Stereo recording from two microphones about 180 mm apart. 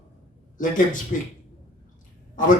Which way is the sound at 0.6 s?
45° left (ahead or behind).